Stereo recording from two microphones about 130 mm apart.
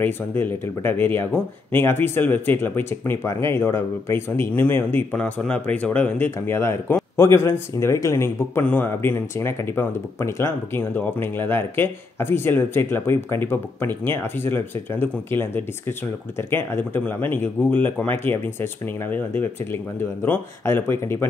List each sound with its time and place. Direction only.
0.0 s speech: 15° left (ahead or behind)